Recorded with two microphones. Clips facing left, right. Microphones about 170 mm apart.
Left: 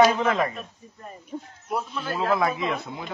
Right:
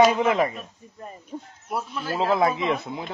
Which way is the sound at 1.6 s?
Centre (ahead or behind).